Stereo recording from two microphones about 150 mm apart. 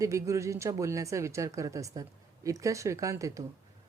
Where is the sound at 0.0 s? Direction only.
20° right (ahead or behind).